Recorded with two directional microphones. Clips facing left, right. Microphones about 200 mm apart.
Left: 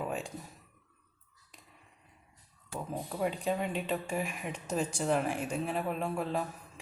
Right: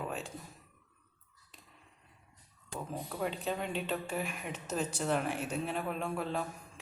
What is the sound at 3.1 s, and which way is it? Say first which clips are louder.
Speech: left 4 dB; 5° left (ahead or behind).